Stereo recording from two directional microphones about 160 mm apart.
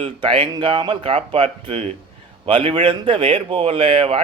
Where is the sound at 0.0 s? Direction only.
35° right (ahead or behind).